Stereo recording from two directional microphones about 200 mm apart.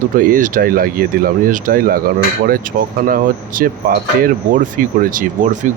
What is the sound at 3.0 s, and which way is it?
Speech, 45° right (ahead or behind).